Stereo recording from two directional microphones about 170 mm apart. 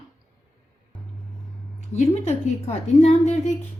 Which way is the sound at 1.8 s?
40° left (ahead or behind).